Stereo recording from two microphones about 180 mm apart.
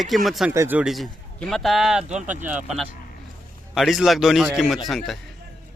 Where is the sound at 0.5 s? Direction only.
10° right (ahead or behind).